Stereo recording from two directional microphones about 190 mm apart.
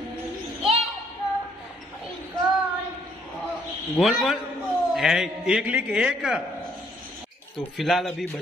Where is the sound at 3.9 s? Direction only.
Centre (ahead or behind).